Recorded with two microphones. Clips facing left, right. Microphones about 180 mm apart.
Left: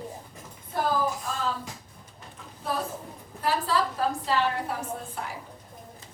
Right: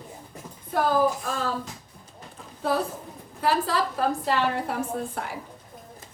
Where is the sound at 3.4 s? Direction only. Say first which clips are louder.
Right 2 dB; 65° right (ahead or behind).